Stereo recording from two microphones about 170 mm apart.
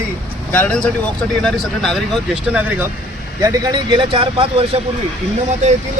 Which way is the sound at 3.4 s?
20° right (ahead or behind).